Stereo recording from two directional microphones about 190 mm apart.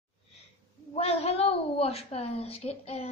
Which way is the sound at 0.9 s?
30° left (ahead or behind).